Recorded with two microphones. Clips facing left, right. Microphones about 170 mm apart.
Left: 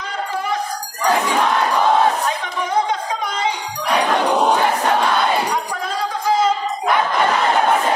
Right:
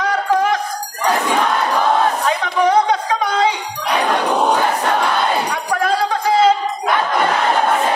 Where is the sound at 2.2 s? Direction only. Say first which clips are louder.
Right 7 dB; 70° right (ahead or behind).